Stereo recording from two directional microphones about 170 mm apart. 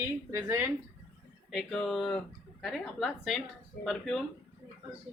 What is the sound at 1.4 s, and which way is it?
Speech, centre (ahead or behind).